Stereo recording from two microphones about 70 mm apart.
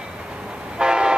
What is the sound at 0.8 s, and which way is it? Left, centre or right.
Vehicle, centre.